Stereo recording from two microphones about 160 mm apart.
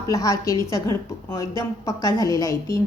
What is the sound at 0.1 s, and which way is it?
A woman's voice, 20° left (ahead or behind).